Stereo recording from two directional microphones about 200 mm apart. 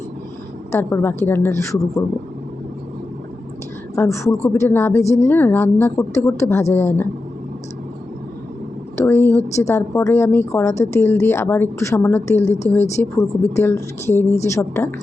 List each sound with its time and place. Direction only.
0.7 s a woman's voice: 10° left (ahead or behind)
3.9 s a woman's voice: 15° left (ahead or behind)
9.0 s a woman's voice: 10° left (ahead or behind)
12.4 s a woman's voice: 35° left (ahead or behind)
13.0 s a woman's voice: 10° left (ahead or behind)